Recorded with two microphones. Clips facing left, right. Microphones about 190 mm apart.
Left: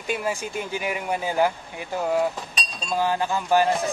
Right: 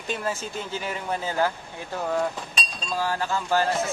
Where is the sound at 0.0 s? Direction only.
10° left (ahead or behind).